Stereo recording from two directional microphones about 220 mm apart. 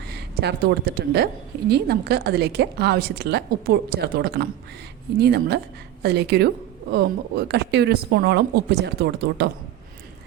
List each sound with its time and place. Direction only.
0.1 s a woman's voice: 50° right (ahead or behind)